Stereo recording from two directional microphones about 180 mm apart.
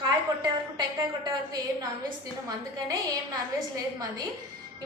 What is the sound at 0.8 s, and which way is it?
A woman's voice, 20° right (ahead or behind).